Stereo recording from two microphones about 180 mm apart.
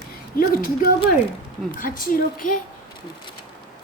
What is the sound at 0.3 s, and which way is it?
Speech, 55° left (ahead or behind).